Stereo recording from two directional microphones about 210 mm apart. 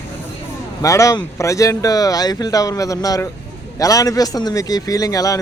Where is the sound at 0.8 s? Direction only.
15° left (ahead or behind).